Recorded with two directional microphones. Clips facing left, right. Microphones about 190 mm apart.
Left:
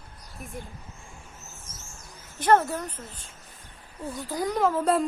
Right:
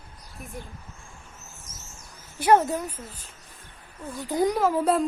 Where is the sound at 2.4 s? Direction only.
10° right (ahead or behind).